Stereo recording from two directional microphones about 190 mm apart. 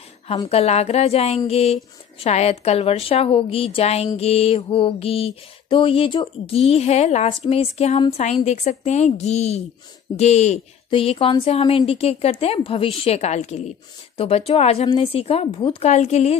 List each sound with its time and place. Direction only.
0.5 s a woman's voice: 35° left (ahead or behind)